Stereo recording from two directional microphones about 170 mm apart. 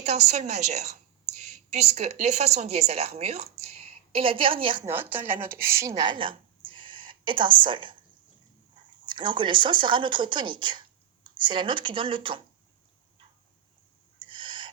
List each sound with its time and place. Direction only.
0.0 s a woman's voice: 40° right (ahead or behind)
4.9 s speech: 10° right (ahead or behind)
6.0 s a sound: 30° right (ahead or behind)
9.0 s speech: 30° right (ahead or behind)
14.2 s owl: 30° right (ahead or behind)